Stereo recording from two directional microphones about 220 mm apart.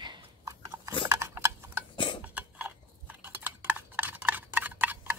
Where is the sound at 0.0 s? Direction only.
20° right (ahead or behind).